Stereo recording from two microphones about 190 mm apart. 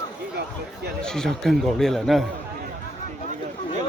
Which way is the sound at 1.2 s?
Centre (ahead or behind).